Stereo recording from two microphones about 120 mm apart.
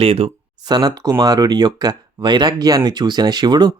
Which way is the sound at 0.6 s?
35° right (ahead or behind).